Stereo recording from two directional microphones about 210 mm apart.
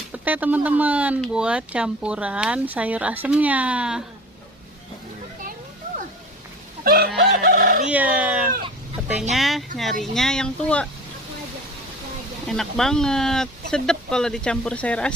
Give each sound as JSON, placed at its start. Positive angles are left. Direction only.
{"t": 0.1, "sound": "speech", "side_deg": -10}
{"t": 6.8, "sound": "chicken", "side_deg": -45}
{"t": 7.9, "sound": "speech", "side_deg": -5}
{"t": 12.5, "sound": "speech", "side_deg": 0}